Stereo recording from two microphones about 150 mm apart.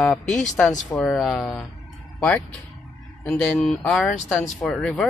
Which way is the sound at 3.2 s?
5° left (ahead or behind).